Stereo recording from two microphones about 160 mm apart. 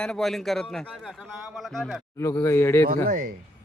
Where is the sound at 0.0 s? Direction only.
5° left (ahead or behind).